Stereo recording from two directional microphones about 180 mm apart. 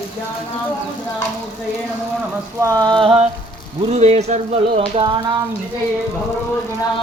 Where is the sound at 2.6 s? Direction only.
20° right (ahead or behind); by 5.0 s 35° right (ahead or behind).